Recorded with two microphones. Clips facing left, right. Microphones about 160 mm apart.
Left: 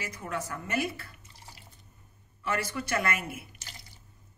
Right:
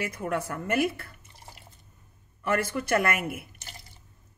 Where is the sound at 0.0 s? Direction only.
60° right (ahead or behind).